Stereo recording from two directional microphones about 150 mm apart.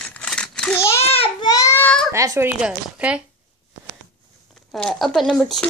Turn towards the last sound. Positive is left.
turn(degrees=0)  # may be behind; listen again after turning